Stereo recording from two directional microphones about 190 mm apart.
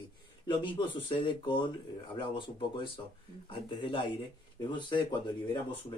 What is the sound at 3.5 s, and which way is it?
Speech, 25° left (ahead or behind).